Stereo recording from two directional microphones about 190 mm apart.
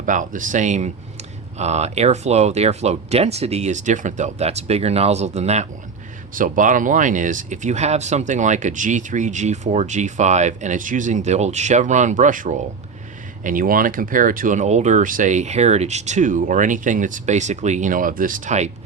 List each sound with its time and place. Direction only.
0.0 s speech: 45° right (ahead or behind)